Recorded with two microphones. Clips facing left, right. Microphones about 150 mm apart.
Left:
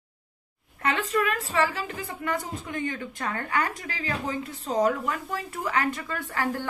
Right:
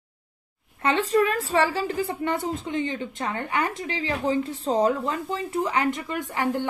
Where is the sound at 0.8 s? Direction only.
30° right (ahead or behind).